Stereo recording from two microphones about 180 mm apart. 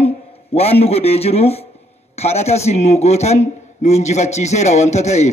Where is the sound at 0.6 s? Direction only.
35° left (ahead or behind).